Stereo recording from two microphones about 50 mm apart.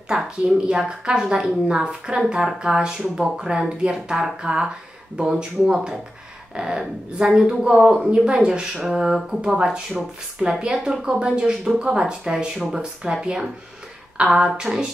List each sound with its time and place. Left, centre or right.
0.1 s a woman's voice: right
8.8 s a woman's voice: centre